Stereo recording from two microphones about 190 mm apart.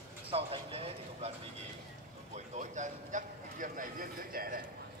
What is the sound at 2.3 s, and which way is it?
Speech, 40° right (ahead or behind).